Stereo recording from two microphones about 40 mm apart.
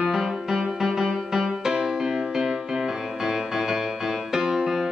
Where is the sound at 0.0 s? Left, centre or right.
Centre.